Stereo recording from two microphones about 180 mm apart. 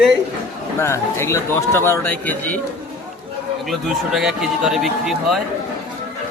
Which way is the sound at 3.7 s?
Centre (ahead or behind).